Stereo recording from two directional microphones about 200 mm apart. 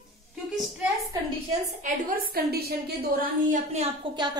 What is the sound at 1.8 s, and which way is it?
A woman's voice, 45° right (ahead or behind).